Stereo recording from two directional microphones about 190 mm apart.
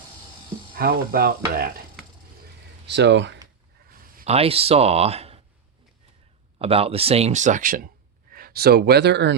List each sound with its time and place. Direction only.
0.8 s speech: 50° right (ahead or behind)
2.8 s speech: 65° right (ahead or behind)
3.8 s a sound: 50° right (ahead or behind)
4.3 s speech: 30° right (ahead or behind)
6.6 s speech: 30° right (ahead or behind); by 9.3 s 65° right (ahead or behind)